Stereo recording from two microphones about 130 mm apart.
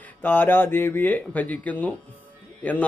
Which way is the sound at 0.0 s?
15° left (ahead or behind).